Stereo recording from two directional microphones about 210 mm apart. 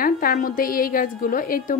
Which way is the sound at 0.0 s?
40° left (ahead or behind).